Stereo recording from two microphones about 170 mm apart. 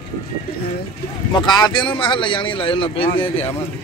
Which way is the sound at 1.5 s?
25° left (ahead or behind).